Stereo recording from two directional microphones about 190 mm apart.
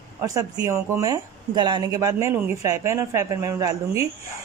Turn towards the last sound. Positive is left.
turn(degrees=-15)  # may be behind; listen again after turning